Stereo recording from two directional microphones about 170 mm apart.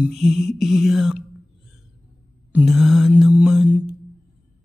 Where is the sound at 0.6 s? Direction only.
Centre (ahead or behind).